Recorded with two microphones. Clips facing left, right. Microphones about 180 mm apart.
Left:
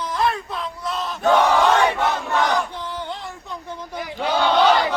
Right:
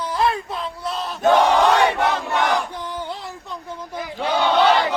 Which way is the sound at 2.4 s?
15° right (ahead or behind).